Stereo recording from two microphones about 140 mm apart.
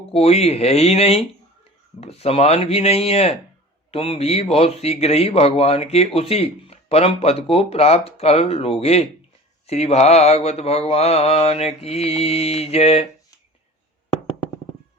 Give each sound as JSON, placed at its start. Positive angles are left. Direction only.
{"t": 0.1, "sound": "a man's voice", "side_deg": 45}